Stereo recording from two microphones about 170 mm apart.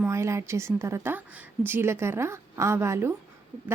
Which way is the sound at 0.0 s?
15° right (ahead or behind).